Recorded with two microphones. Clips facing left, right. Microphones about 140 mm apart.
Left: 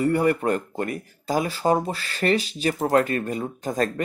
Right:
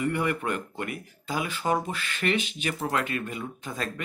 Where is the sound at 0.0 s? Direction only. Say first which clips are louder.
Left 7 dB; 40° left (ahead or behind).